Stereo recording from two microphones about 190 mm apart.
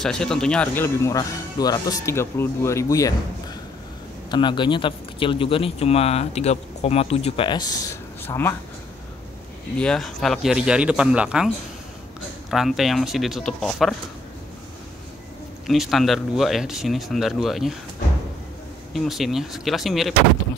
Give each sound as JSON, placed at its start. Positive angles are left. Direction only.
{"t": 0.0, "sound": "speech", "side_deg": 5}
{"t": 4.3, "sound": "speech", "side_deg": 25}
{"t": 9.8, "sound": "speech", "side_deg": 5}
{"t": 15.6, "sound": "speech", "side_deg": 0}
{"t": 18.9, "sound": "speech", "side_deg": 0}